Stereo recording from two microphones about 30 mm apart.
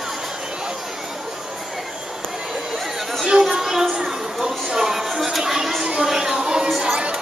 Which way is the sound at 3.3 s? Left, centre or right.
Centre.